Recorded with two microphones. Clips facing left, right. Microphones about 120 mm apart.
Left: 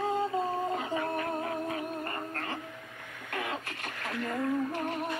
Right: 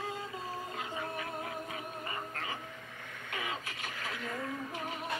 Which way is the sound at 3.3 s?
55° left (ahead or behind).